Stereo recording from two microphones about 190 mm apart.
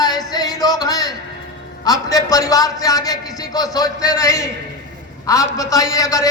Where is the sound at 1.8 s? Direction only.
20° left (ahead or behind).